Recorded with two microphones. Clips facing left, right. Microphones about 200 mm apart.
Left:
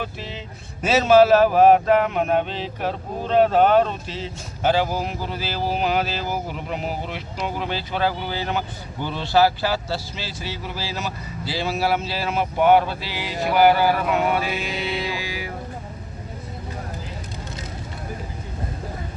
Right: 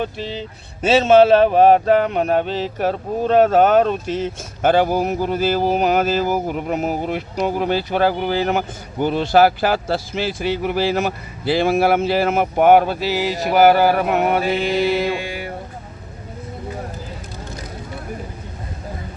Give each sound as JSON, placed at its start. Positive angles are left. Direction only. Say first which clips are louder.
{"t": 0.0, "sound": "speech", "louder": "right 6 dB", "side_deg": -30}